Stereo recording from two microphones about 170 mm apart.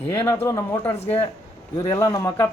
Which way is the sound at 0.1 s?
15° left (ahead or behind).